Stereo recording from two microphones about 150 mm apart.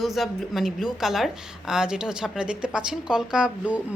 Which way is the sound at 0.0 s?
Centre (ahead or behind).